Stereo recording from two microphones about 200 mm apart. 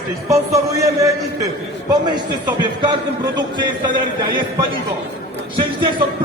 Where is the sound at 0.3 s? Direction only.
15° right (ahead or behind).